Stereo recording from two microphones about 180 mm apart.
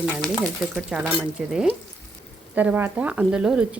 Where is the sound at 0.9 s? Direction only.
10° right (ahead or behind).